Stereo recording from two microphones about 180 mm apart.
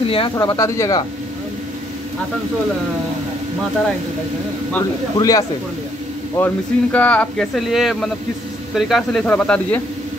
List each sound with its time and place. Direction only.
0.0 s speech: 30° left (ahead or behind)
0.4 s speech: 20° left (ahead or behind)
5.1 s speech: 20° left (ahead or behind)